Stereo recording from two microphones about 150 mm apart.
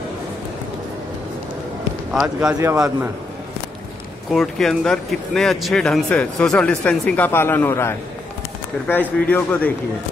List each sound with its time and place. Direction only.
2.1 s speech: 5° right (ahead or behind)
2.6 s a man's voice: 15° right (ahead or behind)
4.3 s speech: centre (ahead or behind)
9.2 s speech: 10° left (ahead or behind)